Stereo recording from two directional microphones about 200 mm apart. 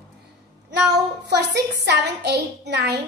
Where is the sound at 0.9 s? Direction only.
55° right (ahead or behind).